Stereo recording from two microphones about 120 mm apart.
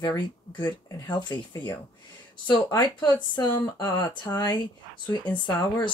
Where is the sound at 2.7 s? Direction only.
35° left (ahead or behind).